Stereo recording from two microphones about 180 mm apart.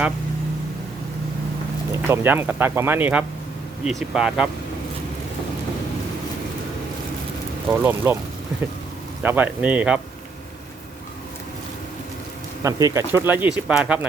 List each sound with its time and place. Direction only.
1.9 s speech: 10° right (ahead or behind)
7.7 s speech: 10° right (ahead or behind)
9.2 s speech: 10° right (ahead or behind)
12.6 s speech: 15° right (ahead or behind)